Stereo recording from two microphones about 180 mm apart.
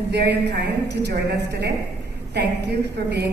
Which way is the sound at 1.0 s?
65° right (ahead or behind).